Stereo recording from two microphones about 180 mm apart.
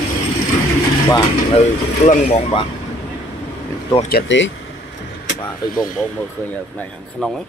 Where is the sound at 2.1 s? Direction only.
35° left (ahead or behind).